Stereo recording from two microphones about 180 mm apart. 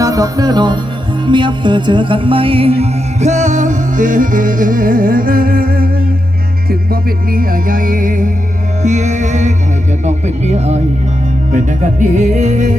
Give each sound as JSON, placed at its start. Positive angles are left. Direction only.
{"t": 0.0, "sound": "music", "side_deg": -20}